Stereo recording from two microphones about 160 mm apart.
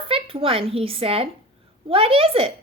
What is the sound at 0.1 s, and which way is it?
A woman's voice, 35° right (ahead or behind).